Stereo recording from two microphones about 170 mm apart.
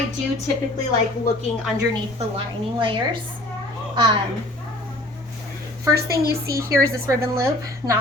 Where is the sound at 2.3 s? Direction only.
30° right (ahead or behind).